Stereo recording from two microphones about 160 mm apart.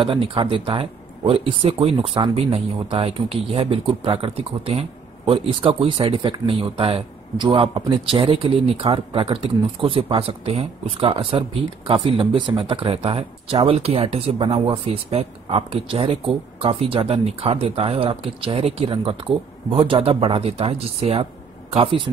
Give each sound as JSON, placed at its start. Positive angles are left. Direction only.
{"t": 0.0, "sound": "speech", "side_deg": -30}